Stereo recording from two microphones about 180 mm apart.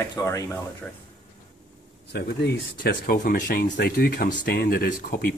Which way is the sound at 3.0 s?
50° left (ahead or behind).